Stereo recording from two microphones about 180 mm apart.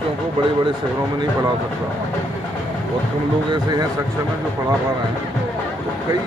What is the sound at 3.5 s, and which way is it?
Speech, 20° right (ahead or behind).